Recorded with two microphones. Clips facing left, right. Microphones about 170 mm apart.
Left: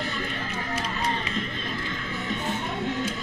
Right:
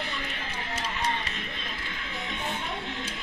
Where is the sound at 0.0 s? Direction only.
45° left (ahead or behind).